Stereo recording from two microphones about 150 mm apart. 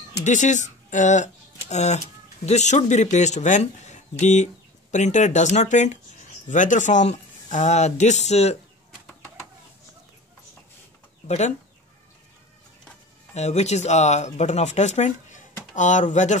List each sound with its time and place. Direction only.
0.2 s speech: 55° left (ahead or behind)
11.2 s speech: 50° left (ahead or behind)
13.3 s speech: 50° left (ahead or behind)